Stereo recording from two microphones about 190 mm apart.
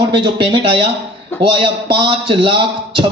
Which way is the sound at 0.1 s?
25° right (ahead or behind).